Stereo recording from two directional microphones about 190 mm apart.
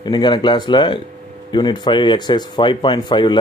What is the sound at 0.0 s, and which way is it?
Speech, 25° left (ahead or behind).